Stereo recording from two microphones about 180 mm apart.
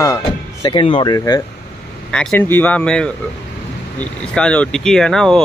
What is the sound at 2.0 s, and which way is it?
Speech, 5° left (ahead or behind).